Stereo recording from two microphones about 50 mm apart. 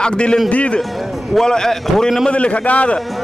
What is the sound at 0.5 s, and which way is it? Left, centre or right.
Speech, left.